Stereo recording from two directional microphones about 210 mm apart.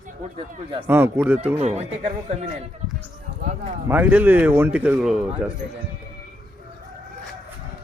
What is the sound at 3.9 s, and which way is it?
Speech, 10° right (ahead or behind).